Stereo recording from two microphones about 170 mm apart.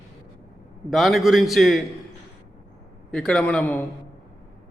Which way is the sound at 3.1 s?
5° left (ahead or behind).